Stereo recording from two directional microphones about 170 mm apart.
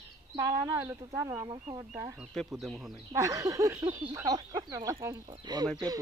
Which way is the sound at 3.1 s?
20° right (ahead or behind).